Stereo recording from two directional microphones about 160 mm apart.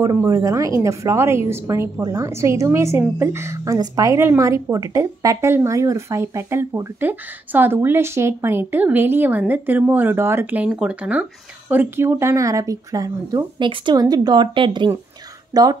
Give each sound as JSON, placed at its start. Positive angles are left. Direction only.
{"t": 0.0, "sound": "a woman's voice", "side_deg": -20}